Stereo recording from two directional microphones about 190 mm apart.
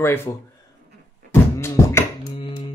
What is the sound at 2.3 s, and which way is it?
Music, 25° left (ahead or behind).